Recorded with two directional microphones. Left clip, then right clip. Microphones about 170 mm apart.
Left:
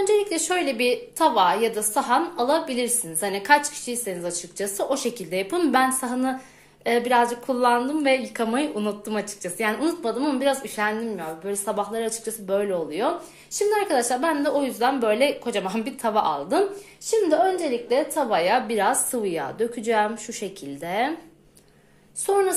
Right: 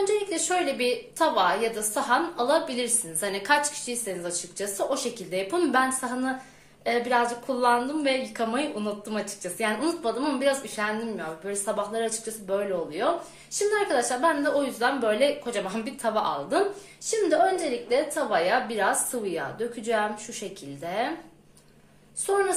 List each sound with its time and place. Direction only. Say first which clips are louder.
0.0 s a woman's voice: left 4 dB; 45° left (ahead or behind)
17.8 s a woman's voice: left 3 dB; 40° left (ahead or behind)
22.2 s a woman's voice: left 3 dB; 45° left (ahead or behind)